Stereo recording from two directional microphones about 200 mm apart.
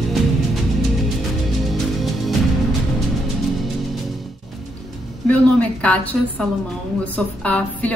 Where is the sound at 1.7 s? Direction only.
Centre (ahead or behind).